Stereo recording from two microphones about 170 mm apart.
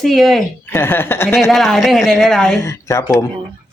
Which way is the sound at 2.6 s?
15° left (ahead or behind).